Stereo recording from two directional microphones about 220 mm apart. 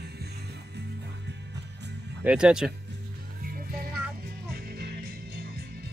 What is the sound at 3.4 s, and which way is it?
Music, 40° right (ahead or behind).